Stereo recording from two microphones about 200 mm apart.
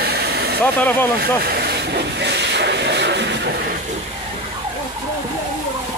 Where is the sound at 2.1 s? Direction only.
60° right (ahead or behind).